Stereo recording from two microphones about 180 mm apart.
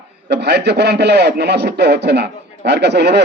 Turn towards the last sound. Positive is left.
turn(degrees=-70)  # may be behind; listen again after turning